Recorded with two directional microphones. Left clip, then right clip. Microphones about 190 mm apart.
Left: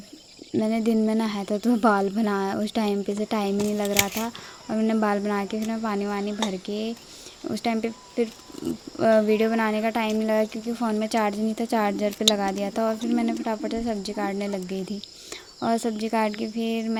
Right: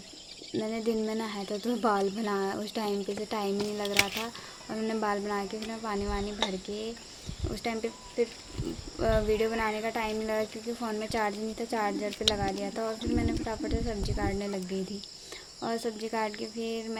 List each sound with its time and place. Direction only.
0.6 s speech: 40° left (ahead or behind)
7.5 s speech: 40° left (ahead or behind)